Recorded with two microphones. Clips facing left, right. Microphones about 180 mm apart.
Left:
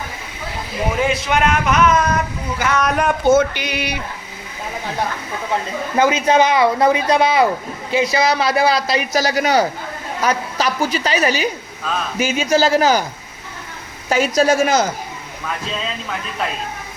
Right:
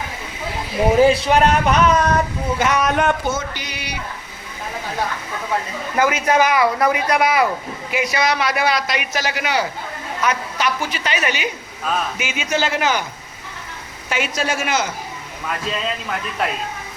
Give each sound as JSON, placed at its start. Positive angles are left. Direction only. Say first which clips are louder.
{"t": 0.9, "sound": "speech", "louder": "right 5 dB", "side_deg": -35}
{"t": 2.6, "sound": "speech", "louder": "even", "side_deg": -20}
{"t": 2.8, "sound": "speech", "louder": "even", "side_deg": 0}
{"t": 3.3, "sound": "a sound", "louder": "left 11 dB", "side_deg": 60}
{"t": 6.0, "sound": "a man's voice", "louder": "left 2 dB", "side_deg": 25}
{"t": 14.1, "sound": "a man's voice", "louder": "left 7 dB", "side_deg": 40}